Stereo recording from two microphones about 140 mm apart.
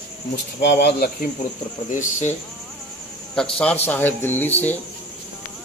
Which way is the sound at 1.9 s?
65° left (ahead or behind).